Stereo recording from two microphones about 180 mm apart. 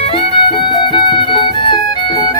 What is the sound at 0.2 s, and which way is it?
Music, 30° left (ahead or behind).